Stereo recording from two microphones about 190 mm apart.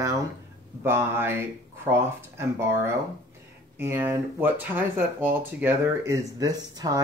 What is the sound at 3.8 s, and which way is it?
Speech, 10° right (ahead or behind).